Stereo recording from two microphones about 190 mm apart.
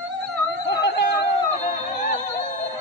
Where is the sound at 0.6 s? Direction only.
60° left (ahead or behind).